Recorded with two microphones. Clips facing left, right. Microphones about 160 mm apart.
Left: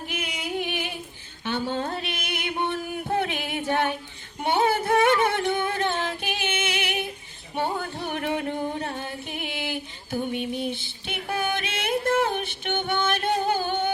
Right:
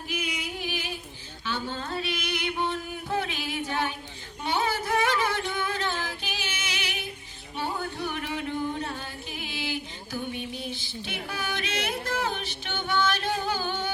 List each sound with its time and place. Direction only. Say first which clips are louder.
0.1 s music: left 2 dB; 55° left (ahead or behind)
1.5 s a sound: left 5 dB; 55° left (ahead or behind)
5.7 s music: left 5 dB; 55° left (ahead or behind)